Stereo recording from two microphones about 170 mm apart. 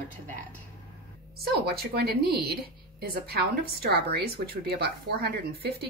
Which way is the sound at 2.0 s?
70° right (ahead or behind).